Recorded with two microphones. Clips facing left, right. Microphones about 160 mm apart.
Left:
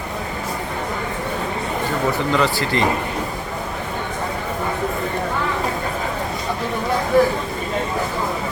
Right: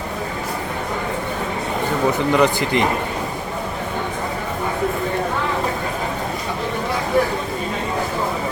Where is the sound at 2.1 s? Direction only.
15° right (ahead or behind).